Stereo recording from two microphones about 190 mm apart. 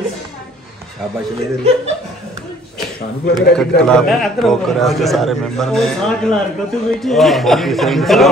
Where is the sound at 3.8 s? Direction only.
5° left (ahead or behind).